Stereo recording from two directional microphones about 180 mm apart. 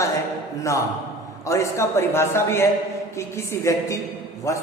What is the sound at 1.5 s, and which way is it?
A man's voice, 15° left (ahead or behind).